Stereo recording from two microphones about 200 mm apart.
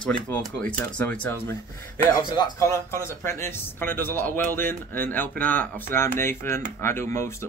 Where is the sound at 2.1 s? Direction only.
15° left (ahead or behind).